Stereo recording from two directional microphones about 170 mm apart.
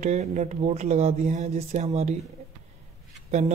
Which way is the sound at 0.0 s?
45° right (ahead or behind).